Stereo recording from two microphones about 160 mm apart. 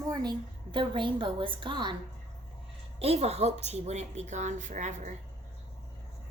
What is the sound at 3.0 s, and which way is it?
A woman's voice, 40° right (ahead or behind).